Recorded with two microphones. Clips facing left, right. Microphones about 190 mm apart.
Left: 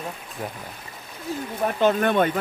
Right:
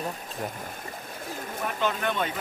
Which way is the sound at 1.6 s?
50° left (ahead or behind).